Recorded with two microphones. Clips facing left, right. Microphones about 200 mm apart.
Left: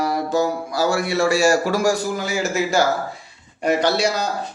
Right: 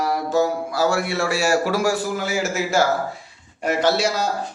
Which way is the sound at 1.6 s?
5° right (ahead or behind).